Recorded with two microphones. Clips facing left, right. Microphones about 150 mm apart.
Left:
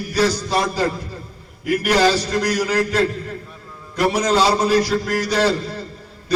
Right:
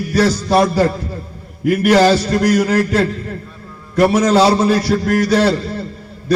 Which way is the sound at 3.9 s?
50° right (ahead or behind).